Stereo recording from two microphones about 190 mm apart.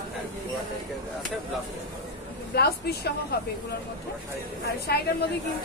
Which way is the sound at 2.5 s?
55° left (ahead or behind).